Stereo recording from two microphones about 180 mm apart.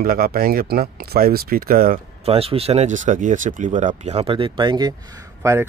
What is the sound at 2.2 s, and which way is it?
A man's voice, 35° right (ahead or behind).